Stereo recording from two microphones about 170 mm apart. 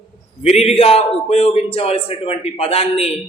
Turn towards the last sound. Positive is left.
turn(degrees=35)  # may be behind; listen again after turning